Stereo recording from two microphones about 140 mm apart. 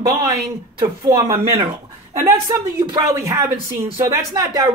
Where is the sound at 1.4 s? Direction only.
45° right (ahead or behind).